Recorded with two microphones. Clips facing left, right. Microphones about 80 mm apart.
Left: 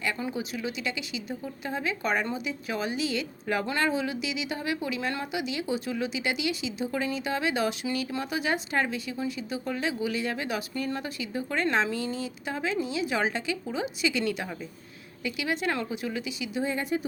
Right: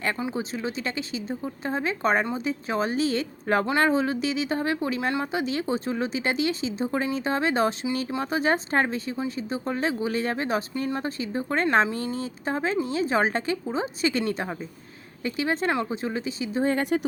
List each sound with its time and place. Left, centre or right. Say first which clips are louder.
0.3 s speech: right 3 dB; right
16.6 s speech: right 6 dB; right